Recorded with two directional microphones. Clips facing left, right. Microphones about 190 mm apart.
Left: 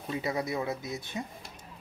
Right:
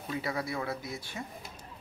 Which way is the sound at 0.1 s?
20° left (ahead or behind).